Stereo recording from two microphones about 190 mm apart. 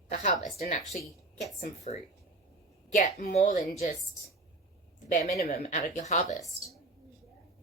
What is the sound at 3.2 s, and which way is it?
Speech, 40° left (ahead or behind).